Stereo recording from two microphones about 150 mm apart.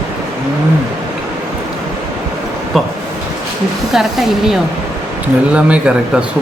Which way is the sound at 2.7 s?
Centre (ahead or behind).